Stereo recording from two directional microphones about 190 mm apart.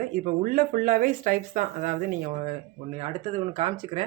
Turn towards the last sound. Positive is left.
turn(degrees=-30)  # may be behind; listen again after turning